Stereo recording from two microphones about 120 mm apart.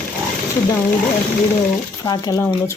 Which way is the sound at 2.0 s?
30° left (ahead or behind).